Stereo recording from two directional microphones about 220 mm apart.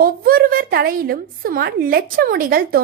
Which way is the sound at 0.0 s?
40° right (ahead or behind).